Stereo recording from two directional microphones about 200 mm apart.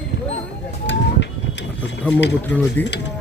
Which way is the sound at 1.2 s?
65° left (ahead or behind).